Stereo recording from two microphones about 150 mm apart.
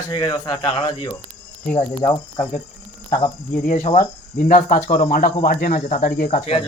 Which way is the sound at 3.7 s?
60° left (ahead or behind).